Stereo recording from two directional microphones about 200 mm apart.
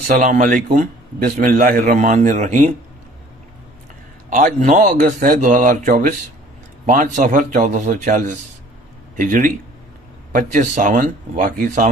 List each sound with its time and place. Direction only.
0.0 s a man's voice: 40° right (ahead or behind)
4.3 s a man's voice: 40° right (ahead or behind)